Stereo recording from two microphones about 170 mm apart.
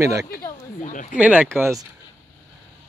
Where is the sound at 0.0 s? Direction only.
20° right (ahead or behind).